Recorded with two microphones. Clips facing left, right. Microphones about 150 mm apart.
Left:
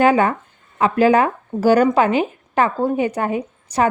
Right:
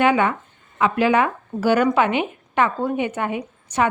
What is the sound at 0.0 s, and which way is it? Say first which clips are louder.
Speech: left 3 dB; 40° left (ahead or behind).